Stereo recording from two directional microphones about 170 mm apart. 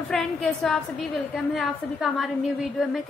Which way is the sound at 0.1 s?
Centre (ahead or behind).